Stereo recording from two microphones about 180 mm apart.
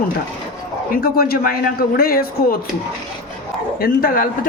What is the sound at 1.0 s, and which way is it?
Speech, 55° left (ahead or behind).